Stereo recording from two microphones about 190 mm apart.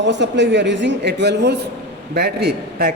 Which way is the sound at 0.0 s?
70° right (ahead or behind).